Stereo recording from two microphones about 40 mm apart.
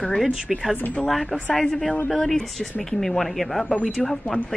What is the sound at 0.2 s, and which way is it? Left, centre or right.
Speech, centre.